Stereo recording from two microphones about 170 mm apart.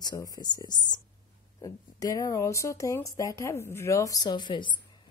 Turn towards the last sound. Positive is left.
turn(degrees=25)  # may be behind; listen again after turning